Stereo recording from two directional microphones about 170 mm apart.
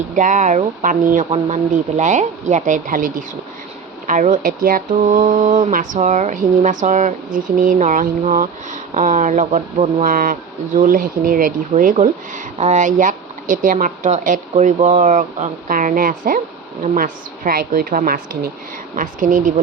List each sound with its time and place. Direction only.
0.1 s speech: 50° right (ahead or behind)
10.1 s speech: 55° right (ahead or behind)